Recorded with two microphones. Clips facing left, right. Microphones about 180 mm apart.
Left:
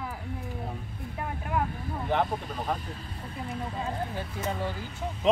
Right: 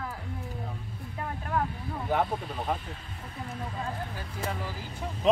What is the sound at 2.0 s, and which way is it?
Speech, 5° right (ahead or behind).